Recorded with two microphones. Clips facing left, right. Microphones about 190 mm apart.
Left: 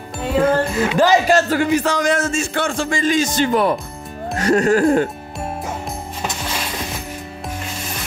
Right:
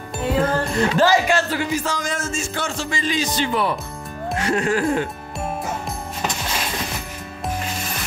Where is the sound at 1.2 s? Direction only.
45° left (ahead or behind).